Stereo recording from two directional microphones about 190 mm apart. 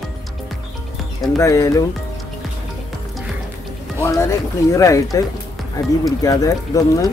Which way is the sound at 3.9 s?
15° left (ahead or behind).